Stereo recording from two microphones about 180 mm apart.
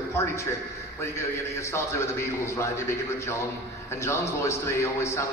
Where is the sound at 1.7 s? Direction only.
15° left (ahead or behind).